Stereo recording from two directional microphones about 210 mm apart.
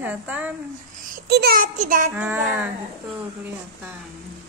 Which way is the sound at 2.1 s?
10° right (ahead or behind).